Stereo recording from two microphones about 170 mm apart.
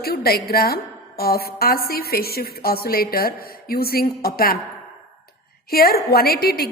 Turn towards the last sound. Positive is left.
turn(degrees=65)  # may be behind; listen again after turning